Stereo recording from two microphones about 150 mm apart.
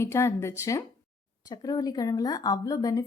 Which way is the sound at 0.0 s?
15° left (ahead or behind).